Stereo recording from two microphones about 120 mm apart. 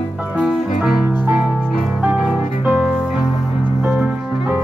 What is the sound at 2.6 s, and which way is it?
Music, 10° right (ahead or behind).